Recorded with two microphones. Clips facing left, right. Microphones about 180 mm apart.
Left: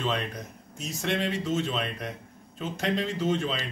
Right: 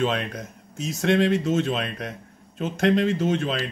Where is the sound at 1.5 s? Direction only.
80° right.